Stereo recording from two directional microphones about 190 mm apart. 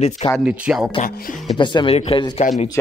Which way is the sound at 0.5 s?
5° right (ahead or behind).